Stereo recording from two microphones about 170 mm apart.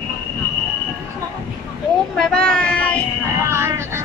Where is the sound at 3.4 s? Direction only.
15° right (ahead or behind).